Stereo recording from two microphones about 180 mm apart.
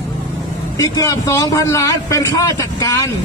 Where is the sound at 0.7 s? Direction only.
20° left (ahead or behind).